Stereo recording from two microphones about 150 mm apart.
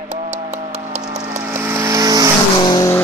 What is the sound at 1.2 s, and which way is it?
Vehicle, 15° right (ahead or behind).